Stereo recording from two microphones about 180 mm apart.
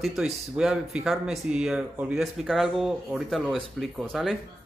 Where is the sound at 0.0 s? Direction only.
Centre (ahead or behind).